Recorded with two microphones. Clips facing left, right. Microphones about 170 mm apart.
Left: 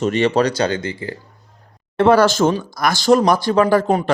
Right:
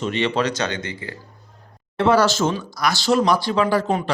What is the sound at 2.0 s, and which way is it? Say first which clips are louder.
A man's voice: left 4 dB; 50° left (ahead or behind).